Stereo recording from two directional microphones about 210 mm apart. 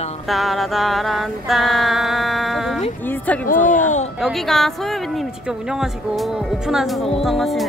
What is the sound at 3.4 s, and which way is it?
Speech, 40° left (ahead or behind).